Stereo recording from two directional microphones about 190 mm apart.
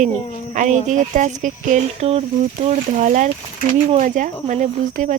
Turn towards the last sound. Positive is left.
turn(degrees=-40)  # may be behind; listen again after turning